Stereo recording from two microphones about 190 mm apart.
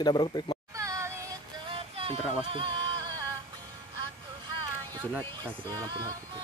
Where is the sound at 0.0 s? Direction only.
25° left (ahead or behind).